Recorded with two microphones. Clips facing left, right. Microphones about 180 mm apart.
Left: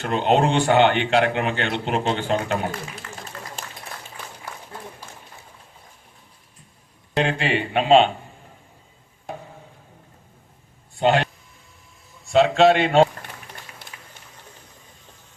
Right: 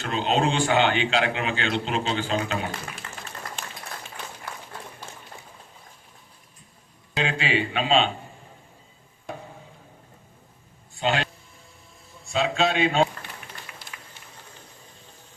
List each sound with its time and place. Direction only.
0.0 s a man's voice: 60° left (ahead or behind)
7.2 s a man's voice: 60° left (ahead or behind)
11.0 s speech: 60° left (ahead or behind)
12.3 s speech: 65° left (ahead or behind)
13.9 s boiling: 30° left (ahead or behind)